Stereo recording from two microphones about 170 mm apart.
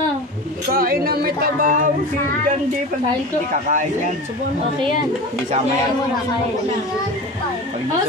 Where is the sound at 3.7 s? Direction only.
50° right (ahead or behind).